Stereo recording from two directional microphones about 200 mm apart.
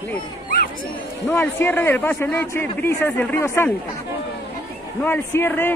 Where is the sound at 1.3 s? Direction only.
10° left (ahead or behind).